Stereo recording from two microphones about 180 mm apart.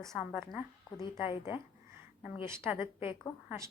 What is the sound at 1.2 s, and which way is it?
A woman's voice, 10° right (ahead or behind).